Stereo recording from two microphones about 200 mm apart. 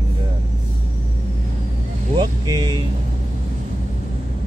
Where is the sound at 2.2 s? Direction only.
20° right (ahead or behind).